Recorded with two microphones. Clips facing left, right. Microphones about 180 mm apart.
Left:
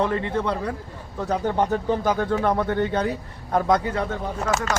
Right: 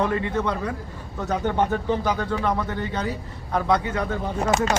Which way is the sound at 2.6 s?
60° left (ahead or behind).